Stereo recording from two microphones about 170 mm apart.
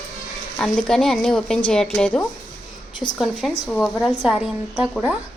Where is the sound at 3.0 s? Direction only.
25° left (ahead or behind).